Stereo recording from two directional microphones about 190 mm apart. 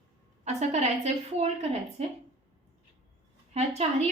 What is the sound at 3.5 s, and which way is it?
Speech, 35° right (ahead or behind).